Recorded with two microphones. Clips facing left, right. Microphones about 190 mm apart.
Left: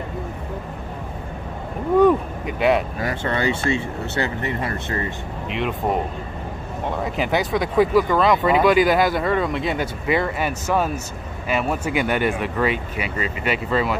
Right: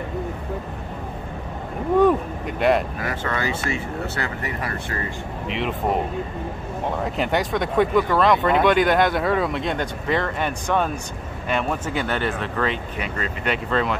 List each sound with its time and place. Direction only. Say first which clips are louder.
2.0 s vehicle: left 2 dB; centre (ahead or behind)
3.0 s speech: left 3 dB; 30° left (ahead or behind)
5.5 s speech: left 1 dB; centre (ahead or behind)
7.0 s speech: left 1 dB; centre (ahead or behind)